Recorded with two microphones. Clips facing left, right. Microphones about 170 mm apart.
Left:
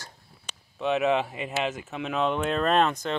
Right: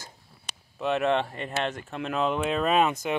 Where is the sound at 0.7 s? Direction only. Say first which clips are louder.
Left 1 dB; centre (ahead or behind).